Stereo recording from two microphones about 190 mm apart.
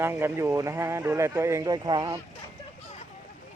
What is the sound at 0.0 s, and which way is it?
Speech, 15° right (ahead or behind).